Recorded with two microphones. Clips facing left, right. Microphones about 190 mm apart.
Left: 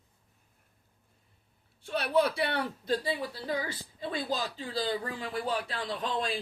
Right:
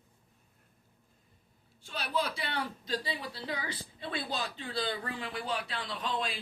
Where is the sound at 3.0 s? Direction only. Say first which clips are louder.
Left 5 dB; 45° left (ahead or behind).